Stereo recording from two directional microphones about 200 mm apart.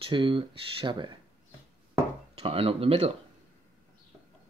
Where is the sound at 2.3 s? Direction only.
30° right (ahead or behind).